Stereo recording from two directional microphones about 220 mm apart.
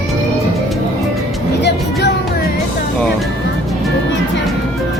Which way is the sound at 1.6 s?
50° left (ahead or behind).